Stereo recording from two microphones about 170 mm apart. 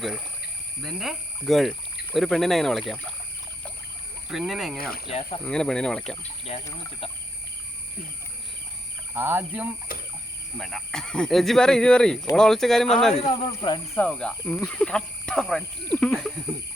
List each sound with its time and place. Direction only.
0.8 s speech: centre (ahead or behind)
4.3 s speech: centre (ahead or behind)
4.8 s speech: 60° left (ahead or behind)
5.5 s speech: 5° left (ahead or behind)
6.5 s speech: 40° left (ahead or behind)
9.1 s speech: 10° right (ahead or behind)
13.1 s speech: 30° left (ahead or behind)
13.9 s speech: 10° left (ahead or behind)